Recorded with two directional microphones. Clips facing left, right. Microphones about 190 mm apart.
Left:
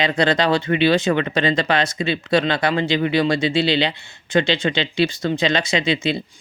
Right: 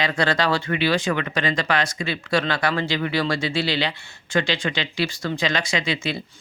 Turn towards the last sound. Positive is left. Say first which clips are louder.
# left 5 dB
turn(degrees=20)  # may be behind; listen again after turning